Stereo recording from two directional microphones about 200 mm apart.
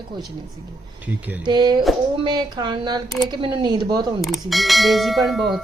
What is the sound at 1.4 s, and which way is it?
A woman's voice, 20° right (ahead or behind).